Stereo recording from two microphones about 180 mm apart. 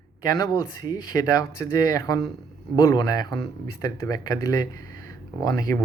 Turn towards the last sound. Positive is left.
turn(degrees=20)  # may be behind; listen again after turning